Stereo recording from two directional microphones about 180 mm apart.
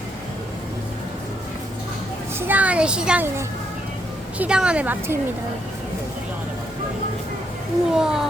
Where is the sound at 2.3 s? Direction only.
10° right (ahead or behind).